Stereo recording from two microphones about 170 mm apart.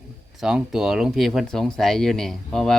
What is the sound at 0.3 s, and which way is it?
Speech, 5° right (ahead or behind).